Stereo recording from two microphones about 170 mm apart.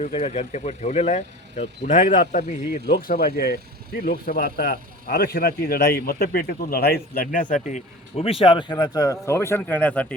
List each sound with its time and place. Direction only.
0.0 s speech: 40° left (ahead or behind)
2.8 s speech: 65° left (ahead or behind)
7.5 s a man's voice: 40° left (ahead or behind); by 10.2 s 10° left (ahead or behind)